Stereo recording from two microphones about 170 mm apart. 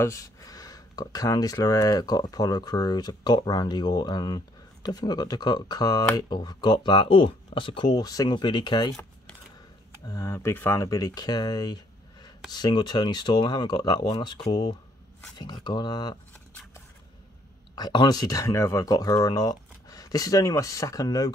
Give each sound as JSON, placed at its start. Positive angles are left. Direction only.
{"t": 0.0, "sound": "speech", "side_deg": 15}
{"t": 10.0, "sound": "speech", "side_deg": 20}
{"t": 17.7, "sound": "speech", "side_deg": 25}